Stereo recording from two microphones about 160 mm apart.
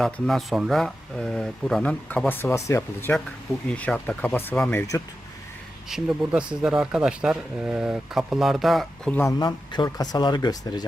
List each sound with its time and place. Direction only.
0.0 s speech: centre (ahead or behind)
5.9 s speech: 5° right (ahead or behind)
9.4 s speech: 25° left (ahead or behind)